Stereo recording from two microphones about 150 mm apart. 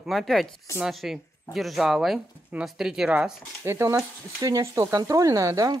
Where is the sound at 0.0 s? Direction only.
Centre (ahead or behind).